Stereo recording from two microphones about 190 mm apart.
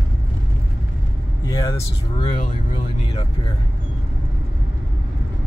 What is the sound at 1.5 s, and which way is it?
Speech, 20° left (ahead or behind).